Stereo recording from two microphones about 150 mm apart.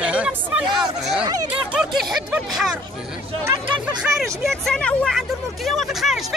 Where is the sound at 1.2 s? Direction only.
25° right (ahead or behind).